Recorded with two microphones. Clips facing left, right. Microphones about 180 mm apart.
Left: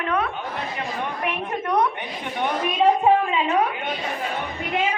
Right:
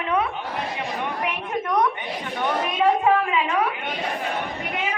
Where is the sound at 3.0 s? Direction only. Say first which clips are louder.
Left 1 dB; 25° left (ahead or behind).